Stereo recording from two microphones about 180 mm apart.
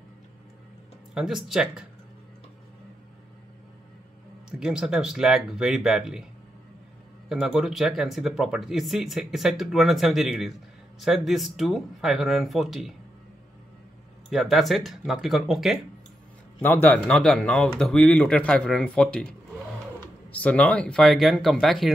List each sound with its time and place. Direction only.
1.1 s speech: 5° right (ahead or behind)
4.5 s speech: 5° right (ahead or behind)
7.2 s speech: 5° right (ahead or behind)
14.3 s speech: centre (ahead or behind)
16.6 s speech: 10° left (ahead or behind)
20.2 s speech: 10° left (ahead or behind)